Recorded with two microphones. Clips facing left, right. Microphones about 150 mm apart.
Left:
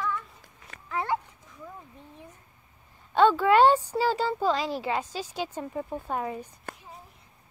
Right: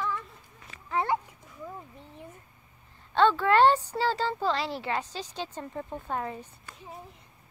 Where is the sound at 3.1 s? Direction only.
10° left (ahead or behind).